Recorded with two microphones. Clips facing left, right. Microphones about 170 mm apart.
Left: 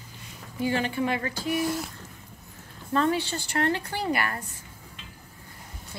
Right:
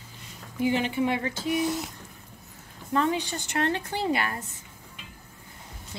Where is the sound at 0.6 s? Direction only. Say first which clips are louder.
Right 1 dB; 15° right (ahead or behind).